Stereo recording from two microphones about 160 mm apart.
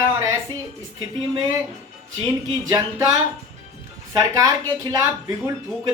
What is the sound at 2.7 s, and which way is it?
A woman's voice, 25° right (ahead or behind).